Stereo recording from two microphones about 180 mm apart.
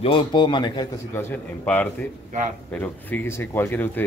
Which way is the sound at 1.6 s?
5° left (ahead or behind).